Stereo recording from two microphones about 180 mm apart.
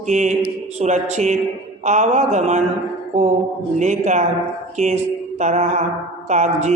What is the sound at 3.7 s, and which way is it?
Mantra, 40° right (ahead or behind).